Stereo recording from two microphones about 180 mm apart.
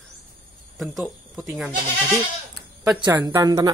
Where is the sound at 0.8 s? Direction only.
Centre (ahead or behind).